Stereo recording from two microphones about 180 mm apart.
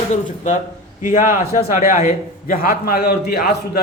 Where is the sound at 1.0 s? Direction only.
45° left (ahead or behind).